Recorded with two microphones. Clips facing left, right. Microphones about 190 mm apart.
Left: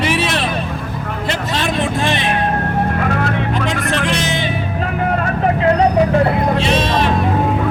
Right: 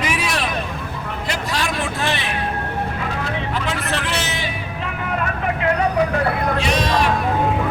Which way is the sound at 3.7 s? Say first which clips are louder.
Left 5 dB; 50° left (ahead or behind).